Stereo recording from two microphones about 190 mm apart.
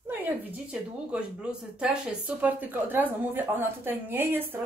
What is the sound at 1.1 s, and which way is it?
Speech, 5° right (ahead or behind).